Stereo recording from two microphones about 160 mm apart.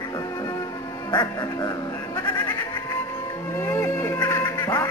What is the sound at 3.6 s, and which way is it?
Duck, 15° left (ahead or behind).